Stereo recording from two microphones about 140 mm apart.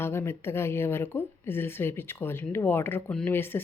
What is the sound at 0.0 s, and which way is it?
Speech, 20° left (ahead or behind).